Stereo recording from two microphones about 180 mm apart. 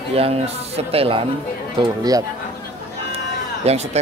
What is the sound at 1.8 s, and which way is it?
Speech, 20° right (ahead or behind).